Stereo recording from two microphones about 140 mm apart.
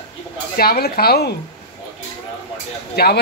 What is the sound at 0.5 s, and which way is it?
Speech, 90° left.